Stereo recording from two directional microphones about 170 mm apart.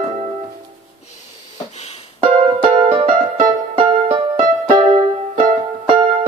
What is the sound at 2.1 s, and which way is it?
Music, 35° right (ahead or behind).